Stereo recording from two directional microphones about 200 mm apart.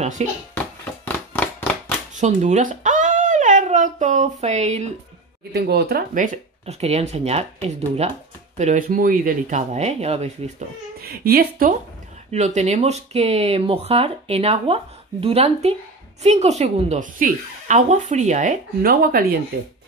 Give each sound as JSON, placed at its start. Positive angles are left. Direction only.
{"t": 0.0, "sound": "speech", "side_deg": -35}
{"t": 0.6, "sound": "a sound", "side_deg": 10}
{"t": 2.1, "sound": "speech", "side_deg": -35}
{"t": 5.5, "sound": "speech", "side_deg": -55}
{"t": 11.0, "sound": "speech", "side_deg": -50}
{"t": 12.3, "sound": "speech", "side_deg": -35}